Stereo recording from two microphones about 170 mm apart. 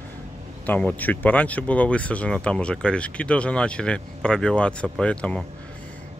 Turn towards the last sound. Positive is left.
turn(degrees=5)  # may be behind; listen again after turning